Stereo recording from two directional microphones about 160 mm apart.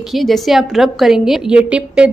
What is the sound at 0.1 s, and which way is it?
A woman's voice, centre (ahead or behind).